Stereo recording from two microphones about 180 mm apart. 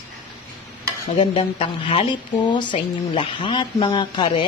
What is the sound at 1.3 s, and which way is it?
Speech, 30° left (ahead or behind).